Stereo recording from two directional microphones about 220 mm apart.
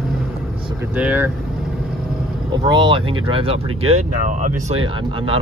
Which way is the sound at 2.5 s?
20° right (ahead or behind).